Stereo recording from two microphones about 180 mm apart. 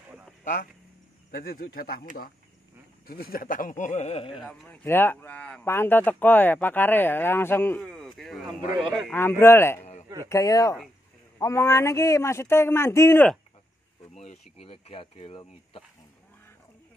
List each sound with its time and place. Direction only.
0.4 s a sound: 45° left (ahead or behind)
1.3 s speech: 55° left (ahead or behind)
3.1 s speech: 55° left (ahead or behind); by 4.4 s 35° left (ahead or behind)
4.4 s a man's voice: 5° left (ahead or behind)
9.1 s speech: 15° left (ahead or behind)
10.0 s a sound: 20° right (ahead or behind)
10.3 s speech: 20° left (ahead or behind)
14.1 s speech: 35° left (ahead or behind)